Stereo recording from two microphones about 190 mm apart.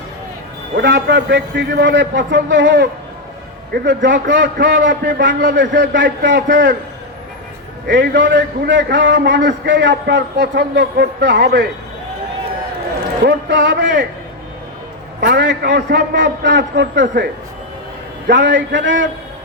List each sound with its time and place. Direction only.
0.8 s a man's voice: 65° right (ahead or behind)
7.9 s a man's voice: 70° right (ahead or behind)
13.2 s a man's voice: 70° right (ahead or behind)
15.3 s a man's voice: 65° right (ahead or behind)
18.3 s a man's voice: 70° right (ahead or behind)